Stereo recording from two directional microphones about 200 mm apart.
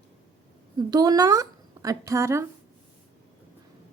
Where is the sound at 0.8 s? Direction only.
20° right (ahead or behind).